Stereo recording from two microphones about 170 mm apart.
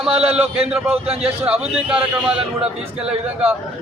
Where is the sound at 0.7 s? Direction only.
5° right (ahead or behind).